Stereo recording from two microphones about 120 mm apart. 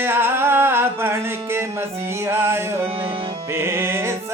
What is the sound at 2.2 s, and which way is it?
Music, 20° right (ahead or behind).